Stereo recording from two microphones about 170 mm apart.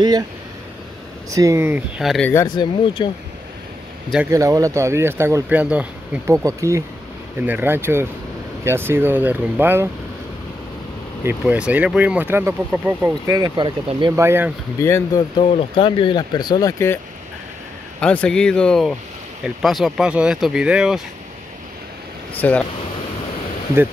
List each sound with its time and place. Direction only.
1.3 s speech: 20° right (ahead or behind)
2.0 s speech: centre (ahead or behind)
2.4 s speech: 30° left (ahead or behind)
4.3 s speech: 20° right (ahead or behind)
11.2 s speech: 5° right (ahead or behind)
13.3 s speech: 25° right (ahead or behind)
14.1 s speech: 15° right (ahead or behind)
14.8 s speech: 15° left (ahead or behind)
15.4 s speech: 35° left (ahead or behind); by 17.0 s 15° left (ahead or behind)
18.0 s speech: 5° left (ahead or behind)
22.3 s speech: 10° left (ahead or behind)